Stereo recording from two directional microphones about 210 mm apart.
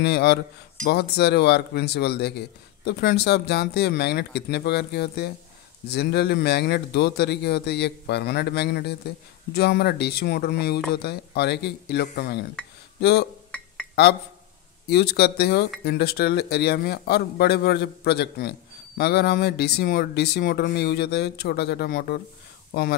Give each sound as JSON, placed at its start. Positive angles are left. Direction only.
{"t": 0.0, "sound": "speech", "side_deg": 50}
{"t": 13.5, "sound": "a sound", "side_deg": 5}
{"t": 14.9, "sound": "speech", "side_deg": 50}